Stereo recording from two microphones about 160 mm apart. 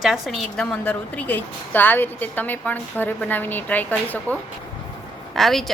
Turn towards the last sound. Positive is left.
turn(degrees=0)  # may be behind; listen again after turning